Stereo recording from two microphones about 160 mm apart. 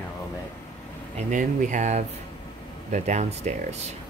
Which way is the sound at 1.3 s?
55° right (ahead or behind).